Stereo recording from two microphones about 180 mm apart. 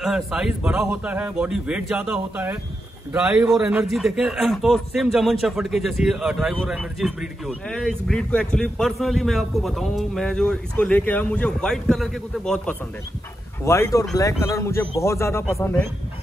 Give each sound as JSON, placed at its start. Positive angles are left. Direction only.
{"t": 0.0, "sound": "a man's voice", "side_deg": 0}
{"t": 13.7, "sound": "a man's voice", "side_deg": 15}